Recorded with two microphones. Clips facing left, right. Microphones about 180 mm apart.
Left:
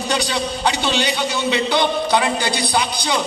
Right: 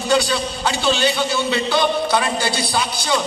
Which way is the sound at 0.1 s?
20° left (ahead or behind).